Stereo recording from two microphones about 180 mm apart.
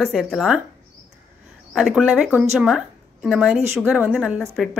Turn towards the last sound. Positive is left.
turn(degrees=0)  # may be behind; listen again after turning